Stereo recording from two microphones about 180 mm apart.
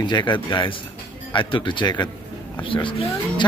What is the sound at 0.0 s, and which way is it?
Speech, 25° left (ahead or behind).